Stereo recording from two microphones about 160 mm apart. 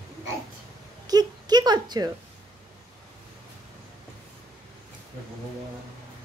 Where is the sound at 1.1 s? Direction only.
25° right (ahead or behind).